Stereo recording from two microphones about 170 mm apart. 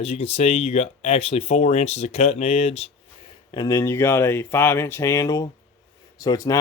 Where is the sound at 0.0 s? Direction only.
35° left (ahead or behind).